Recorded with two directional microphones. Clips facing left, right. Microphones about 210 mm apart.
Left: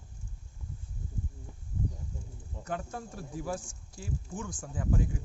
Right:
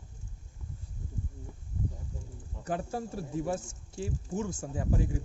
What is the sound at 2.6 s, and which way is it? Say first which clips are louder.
Speech: right 4 dB; 35° right (ahead or behind).